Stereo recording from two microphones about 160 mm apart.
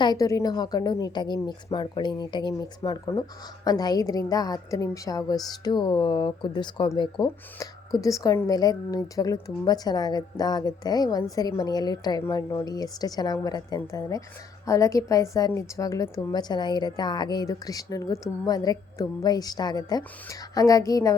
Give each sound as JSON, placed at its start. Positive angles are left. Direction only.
{"t": 0.0, "sound": "a woman's voice", "side_deg": 25}